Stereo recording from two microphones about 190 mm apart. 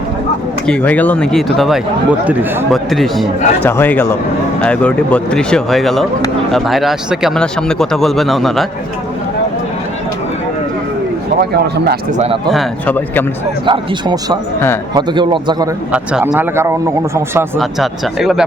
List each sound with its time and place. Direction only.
0.7 s a man's voice: 10° left (ahead or behind)
3.7 s a man's voice: 10° left (ahead or behind)
11.3 s speech: 55° right (ahead or behind)
12.1 s speech: 35° right (ahead or behind)
12.5 s a man's voice: 5° left (ahead or behind)
13.7 s a man's voice: 25° right (ahead or behind)
15.9 s speech: 5° right (ahead or behind)
17.6 s speech: centre (ahead or behind)